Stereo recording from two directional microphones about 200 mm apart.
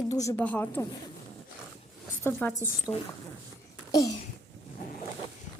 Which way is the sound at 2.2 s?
10° left (ahead or behind).